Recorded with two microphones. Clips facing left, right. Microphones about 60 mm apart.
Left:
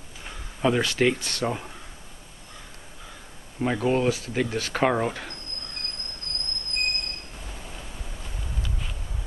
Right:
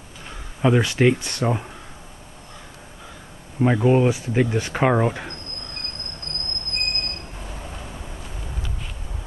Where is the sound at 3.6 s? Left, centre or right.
Centre.